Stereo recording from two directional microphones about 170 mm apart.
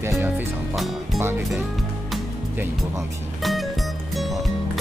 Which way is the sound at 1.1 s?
15° right (ahead or behind).